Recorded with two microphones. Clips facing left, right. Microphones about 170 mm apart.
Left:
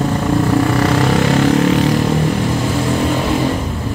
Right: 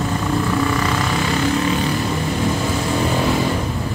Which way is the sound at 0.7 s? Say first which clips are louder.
Left 6 dB; 65° left (ahead or behind).